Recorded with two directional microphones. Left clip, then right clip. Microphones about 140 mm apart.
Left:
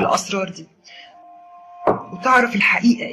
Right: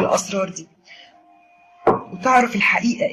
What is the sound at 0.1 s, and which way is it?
Speech, 35° left (ahead or behind).